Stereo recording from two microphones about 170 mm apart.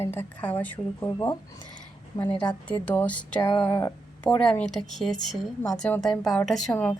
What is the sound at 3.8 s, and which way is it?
Speech, 10° left (ahead or behind).